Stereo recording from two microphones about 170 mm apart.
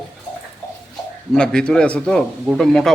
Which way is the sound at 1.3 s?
5° left (ahead or behind).